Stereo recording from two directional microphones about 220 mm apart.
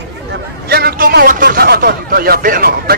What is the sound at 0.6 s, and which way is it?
A man's voice, 45° right (ahead or behind).